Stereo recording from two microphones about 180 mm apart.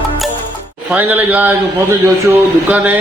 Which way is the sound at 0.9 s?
10° right (ahead or behind).